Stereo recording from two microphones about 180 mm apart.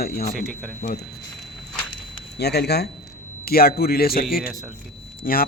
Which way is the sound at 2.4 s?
65° left (ahead or behind).